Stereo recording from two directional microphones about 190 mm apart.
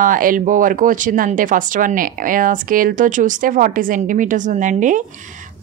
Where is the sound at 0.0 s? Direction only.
45° right (ahead or behind).